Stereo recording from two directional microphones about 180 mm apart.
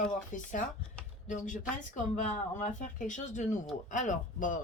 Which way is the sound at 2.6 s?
45° left (ahead or behind).